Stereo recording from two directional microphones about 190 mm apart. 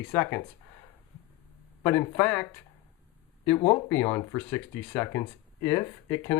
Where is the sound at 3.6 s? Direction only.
25° left (ahead or behind).